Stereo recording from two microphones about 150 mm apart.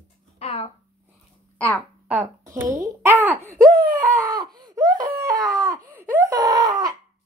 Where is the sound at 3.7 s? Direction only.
70° right (ahead or behind).